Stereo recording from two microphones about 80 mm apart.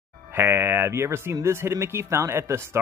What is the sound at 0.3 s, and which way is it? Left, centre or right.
Speech, right.